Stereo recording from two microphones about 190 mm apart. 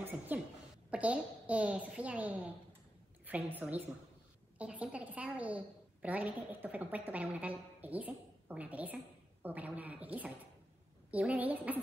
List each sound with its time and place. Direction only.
0.3 s a woman's voice: 10° right (ahead or behind)